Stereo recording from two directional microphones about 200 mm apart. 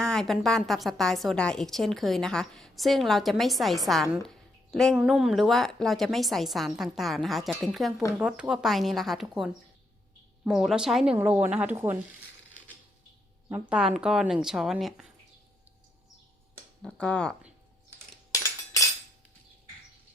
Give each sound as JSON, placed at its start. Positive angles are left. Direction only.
{"t": 0.0, "sound": "a woman's voice", "side_deg": 5}
{"t": 13.5, "sound": "a woman's voice", "side_deg": -5}
{"t": 16.8, "sound": "a woman's voice", "side_deg": 5}
{"t": 18.3, "sound": "cutlery", "side_deg": 15}